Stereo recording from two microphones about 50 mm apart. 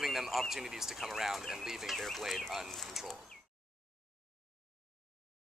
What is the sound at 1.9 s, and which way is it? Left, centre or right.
Speech, centre.